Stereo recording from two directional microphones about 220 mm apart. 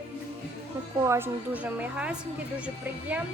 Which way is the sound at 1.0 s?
10° right (ahead or behind).